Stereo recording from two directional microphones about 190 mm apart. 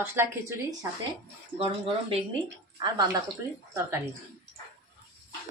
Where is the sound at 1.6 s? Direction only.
30° right (ahead or behind).